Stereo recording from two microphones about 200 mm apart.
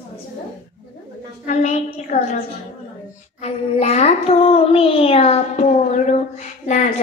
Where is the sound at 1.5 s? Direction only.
35° left (ahead or behind).